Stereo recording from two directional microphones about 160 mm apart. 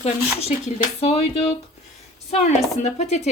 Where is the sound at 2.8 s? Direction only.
45° left (ahead or behind).